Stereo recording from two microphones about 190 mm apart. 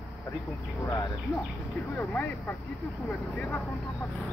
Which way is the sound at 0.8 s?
15° left (ahead or behind).